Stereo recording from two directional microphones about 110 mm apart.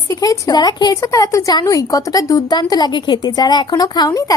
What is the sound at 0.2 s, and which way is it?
A woman's voice, 35° left (ahead or behind).